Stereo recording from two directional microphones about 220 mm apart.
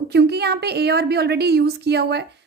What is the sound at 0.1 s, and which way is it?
A woman's voice, 50° right (ahead or behind).